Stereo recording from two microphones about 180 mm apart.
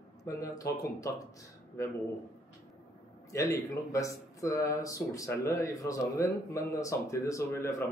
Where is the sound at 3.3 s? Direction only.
15° left (ahead or behind).